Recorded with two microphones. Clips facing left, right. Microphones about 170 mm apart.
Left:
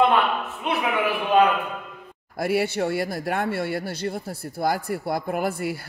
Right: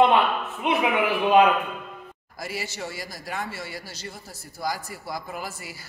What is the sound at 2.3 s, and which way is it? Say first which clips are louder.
Speech: left 11 dB; 60° left (ahead or behind).